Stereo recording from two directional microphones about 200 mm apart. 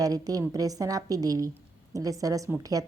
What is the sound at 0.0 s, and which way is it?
Speech, 20° right (ahead or behind).